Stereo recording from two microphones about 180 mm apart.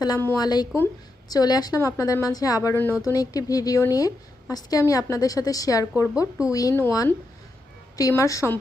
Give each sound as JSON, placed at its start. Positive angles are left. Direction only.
{"t": 0.0, "sound": "a woman's voice", "side_deg": 15}